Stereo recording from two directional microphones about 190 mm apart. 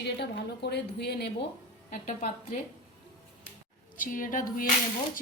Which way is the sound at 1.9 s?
40° left (ahead or behind).